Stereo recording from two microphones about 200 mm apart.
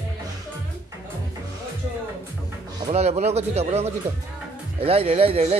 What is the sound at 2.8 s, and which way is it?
Speech, 30° right (ahead or behind).